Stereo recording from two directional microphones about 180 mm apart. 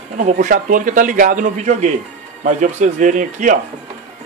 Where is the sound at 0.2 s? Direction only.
40° right (ahead or behind).